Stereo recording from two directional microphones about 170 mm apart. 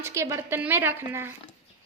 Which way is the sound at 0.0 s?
15° right (ahead or behind).